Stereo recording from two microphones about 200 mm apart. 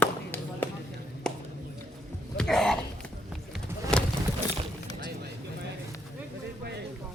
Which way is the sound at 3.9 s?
5° left (ahead or behind).